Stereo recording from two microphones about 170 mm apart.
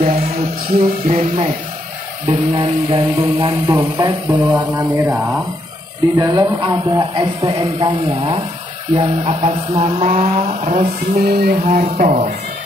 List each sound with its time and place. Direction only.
0.0 s music: 55° right (ahead or behind)
0.7 s speech: 40° right (ahead or behind)
3.6 s speech: 20° right (ahead or behind)
4.5 s speech: 10° right (ahead or behind)
6.1 s speech: 30° right (ahead or behind)
8.9 s speech: 35° right (ahead or behind)
11.2 s a sound: 65° right (ahead or behind)
11.8 s speech: 45° right (ahead or behind)